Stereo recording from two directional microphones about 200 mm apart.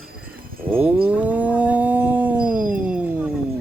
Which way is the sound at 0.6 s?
10° right (ahead or behind).